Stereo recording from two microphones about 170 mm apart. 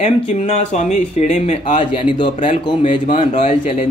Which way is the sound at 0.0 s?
40° left (ahead or behind).